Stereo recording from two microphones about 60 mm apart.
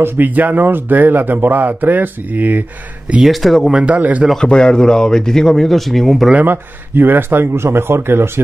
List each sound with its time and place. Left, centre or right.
0.0 s speech: right
3.3 s speech: centre
3.7 s speech: right
4.4 s speech: centre
6.4 s speech: right